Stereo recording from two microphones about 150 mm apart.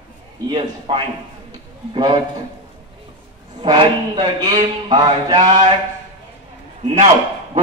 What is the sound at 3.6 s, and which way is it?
A man's voice, 30° right (ahead or behind).